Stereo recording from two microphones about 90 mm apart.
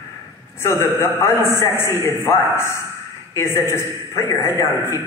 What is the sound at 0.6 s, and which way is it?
A man's voice, 30° left (ahead or behind).